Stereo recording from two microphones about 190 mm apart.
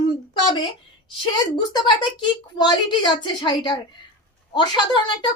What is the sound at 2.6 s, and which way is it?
Speech, 25° left (ahead or behind).